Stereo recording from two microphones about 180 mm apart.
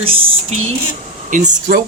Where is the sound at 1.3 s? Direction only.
50° right (ahead or behind).